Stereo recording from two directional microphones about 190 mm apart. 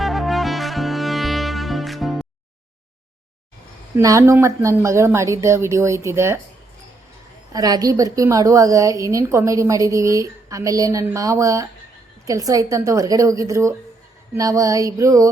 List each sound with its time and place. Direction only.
0.0 s music: centre (ahead or behind)
3.9 s a woman's voice: 15° right (ahead or behind)
7.5 s a woman's voice: 20° right (ahead or behind)